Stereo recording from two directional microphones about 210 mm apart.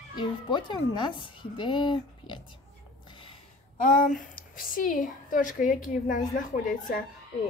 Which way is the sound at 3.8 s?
40° left (ahead or behind).